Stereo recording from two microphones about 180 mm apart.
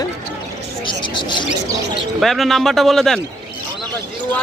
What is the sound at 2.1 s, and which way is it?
Speech, centre (ahead or behind).